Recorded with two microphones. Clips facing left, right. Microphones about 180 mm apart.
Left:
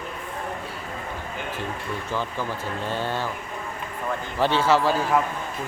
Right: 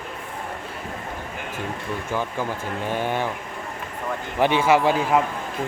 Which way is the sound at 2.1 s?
15° right (ahead or behind).